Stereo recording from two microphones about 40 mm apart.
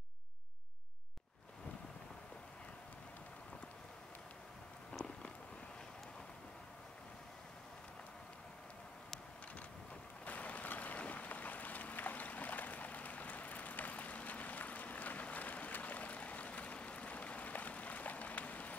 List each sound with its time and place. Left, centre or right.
10.2 s boat: left